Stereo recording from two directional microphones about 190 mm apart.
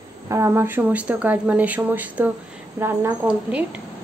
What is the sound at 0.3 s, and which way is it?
Speech, 15° right (ahead or behind).